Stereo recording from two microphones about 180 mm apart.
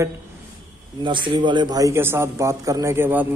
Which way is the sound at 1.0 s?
25° right (ahead or behind).